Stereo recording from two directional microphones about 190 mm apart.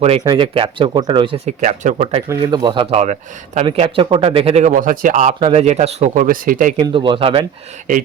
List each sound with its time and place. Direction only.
0.3 s speech: 25° right (ahead or behind)
1.5 s speech: 40° right (ahead or behind)
2.3 s speech: 20° right (ahead or behind); by 6.7 s 45° right (ahead or behind)
6.7 s speech: 25° right (ahead or behind)